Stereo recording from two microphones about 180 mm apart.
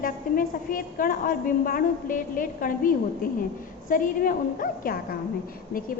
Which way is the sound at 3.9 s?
50° left (ahead or behind).